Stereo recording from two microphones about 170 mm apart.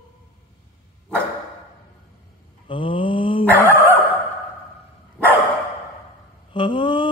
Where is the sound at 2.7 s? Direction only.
30° left (ahead or behind).